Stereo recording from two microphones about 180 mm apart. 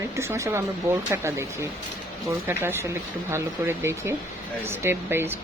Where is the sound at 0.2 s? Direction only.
15° right (ahead or behind).